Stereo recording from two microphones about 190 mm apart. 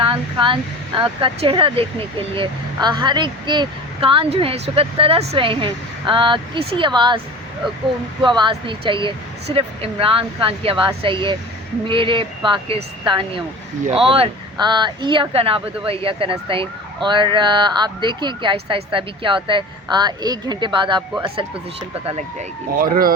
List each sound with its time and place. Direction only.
0.0 s speech: 25° right (ahead or behind)
8.2 s speech: 25° right (ahead or behind)
22.8 s speech: 50° right (ahead or behind)